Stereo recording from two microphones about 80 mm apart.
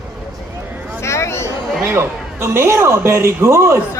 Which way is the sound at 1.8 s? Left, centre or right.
Right.